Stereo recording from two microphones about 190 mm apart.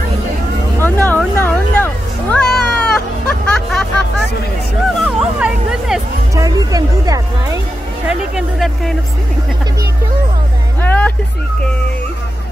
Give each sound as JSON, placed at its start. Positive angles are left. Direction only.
{"t": 0.7, "sound": "a sound", "side_deg": 10}
{"t": 2.3, "sound": "cat", "side_deg": 5}
{"t": 3.4, "sound": "music", "side_deg": 5}
{"t": 5.0, "sound": "music", "side_deg": -5}
{"t": 6.3, "sound": "music", "side_deg": -20}
{"t": 8.1, "sound": "a sound", "side_deg": 0}
{"t": 10.8, "sound": "music", "side_deg": 10}